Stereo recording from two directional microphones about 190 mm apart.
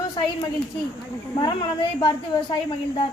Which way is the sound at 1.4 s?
25° left (ahead or behind).